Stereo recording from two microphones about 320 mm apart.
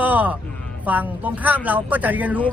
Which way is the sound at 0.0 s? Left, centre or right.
Centre.